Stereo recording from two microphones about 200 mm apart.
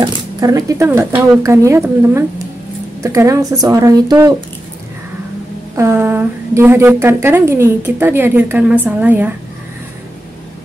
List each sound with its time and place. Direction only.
0.0 s a woman's voice: 15° right (ahead or behind)
5.8 s a woman's voice: 15° right (ahead or behind)